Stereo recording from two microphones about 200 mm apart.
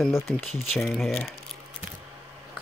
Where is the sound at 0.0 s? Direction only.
Centre (ahead or behind).